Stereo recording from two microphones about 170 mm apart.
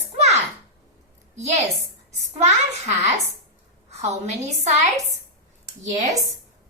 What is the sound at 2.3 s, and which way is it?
A woman's voice, 40° right (ahead or behind).